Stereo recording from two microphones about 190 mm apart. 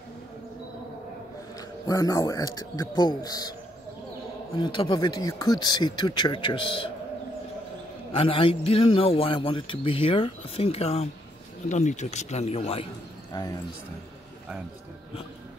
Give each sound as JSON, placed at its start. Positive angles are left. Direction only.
{"t": 1.9, "sound": "a man's voice", "side_deg": 20}
{"t": 4.6, "sound": "a man's voice", "side_deg": 25}
{"t": 8.1, "sound": "a man's voice", "side_deg": 30}
{"t": 13.3, "sound": "a man's voice", "side_deg": 20}